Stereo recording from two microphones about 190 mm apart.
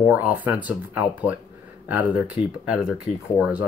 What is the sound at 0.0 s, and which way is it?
Speech, 10° right (ahead or behind).